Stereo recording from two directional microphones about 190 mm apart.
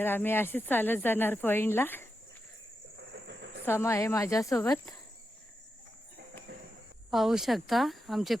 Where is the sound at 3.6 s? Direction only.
10° left (ahead or behind).